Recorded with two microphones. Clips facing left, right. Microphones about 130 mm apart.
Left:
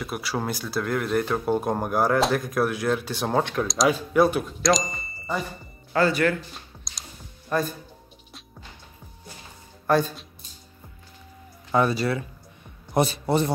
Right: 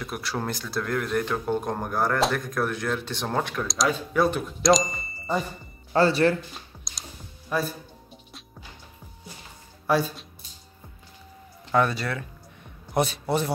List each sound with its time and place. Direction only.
0.0 s speech: 5° left (ahead or behind)
5.9 s speech: 30° right (ahead or behind)
6.5 s music: centre (ahead or behind)
9.8 s speech: 5° right (ahead or behind)
11.7 s speech: 5° left (ahead or behind)